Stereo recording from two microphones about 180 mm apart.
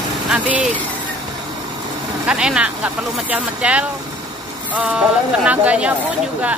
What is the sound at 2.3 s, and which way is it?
Speech, 5° right (ahead or behind).